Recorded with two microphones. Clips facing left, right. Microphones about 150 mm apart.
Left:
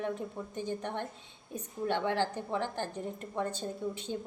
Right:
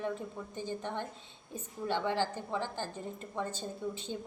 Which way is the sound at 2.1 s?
15° left (ahead or behind).